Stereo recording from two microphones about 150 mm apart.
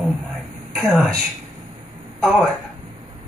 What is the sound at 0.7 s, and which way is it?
Speech, 5° left (ahead or behind).